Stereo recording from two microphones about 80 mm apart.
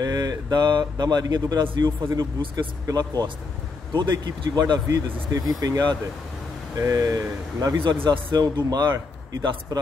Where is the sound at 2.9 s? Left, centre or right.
Right.